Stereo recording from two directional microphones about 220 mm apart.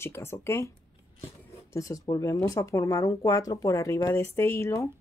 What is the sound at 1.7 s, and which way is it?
Speech, 15° left (ahead or behind).